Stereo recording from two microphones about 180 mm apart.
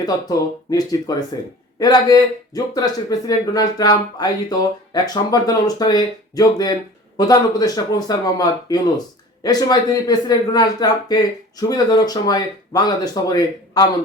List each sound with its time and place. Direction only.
0.0 s speech: 20° left (ahead or behind)